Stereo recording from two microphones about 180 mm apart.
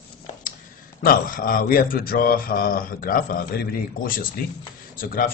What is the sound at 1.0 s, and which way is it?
Speech, 50° left (ahead or behind).